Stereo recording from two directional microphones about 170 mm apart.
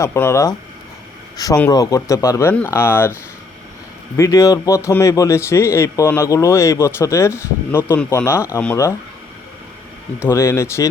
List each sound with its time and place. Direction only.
0.0 s a man's voice: 15° left (ahead or behind)
4.2 s a man's voice: 20° left (ahead or behind)
10.2 s a man's voice: 15° left (ahead or behind)